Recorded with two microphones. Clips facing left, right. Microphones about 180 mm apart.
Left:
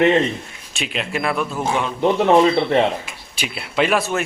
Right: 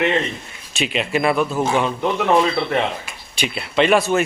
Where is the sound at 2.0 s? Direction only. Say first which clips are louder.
Left 7 dB; 30° left (ahead or behind).